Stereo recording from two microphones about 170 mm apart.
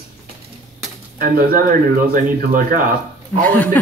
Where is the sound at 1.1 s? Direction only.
60° right (ahead or behind).